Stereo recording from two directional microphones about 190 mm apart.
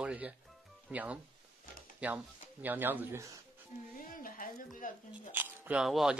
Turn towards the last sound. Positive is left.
turn(degrees=0)  # may be behind; listen again after turning